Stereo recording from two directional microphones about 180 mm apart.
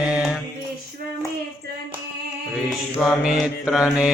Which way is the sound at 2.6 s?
Centre (ahead or behind).